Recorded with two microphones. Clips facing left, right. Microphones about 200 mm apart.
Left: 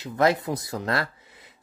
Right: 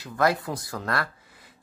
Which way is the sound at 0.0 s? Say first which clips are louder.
Left 2 dB; 20° left (ahead or behind).